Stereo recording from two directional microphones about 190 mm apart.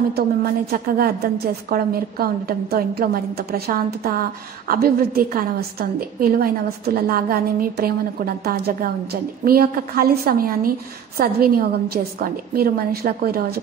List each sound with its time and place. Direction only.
0.7 s a woman's voice: 50° right (ahead or behind)